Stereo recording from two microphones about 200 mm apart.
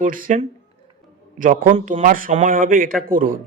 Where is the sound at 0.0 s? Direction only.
40° right (ahead or behind).